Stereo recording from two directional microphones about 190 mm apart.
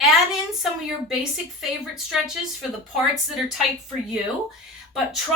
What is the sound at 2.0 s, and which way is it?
Speech, centre (ahead or behind).